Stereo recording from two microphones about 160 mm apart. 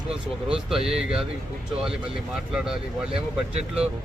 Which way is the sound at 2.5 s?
5° right (ahead or behind).